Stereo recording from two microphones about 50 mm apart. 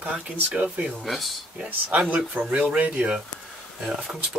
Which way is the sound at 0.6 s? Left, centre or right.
Centre.